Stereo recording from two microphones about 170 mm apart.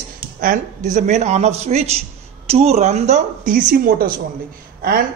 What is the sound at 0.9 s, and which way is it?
A man's voice, 45° right (ahead or behind).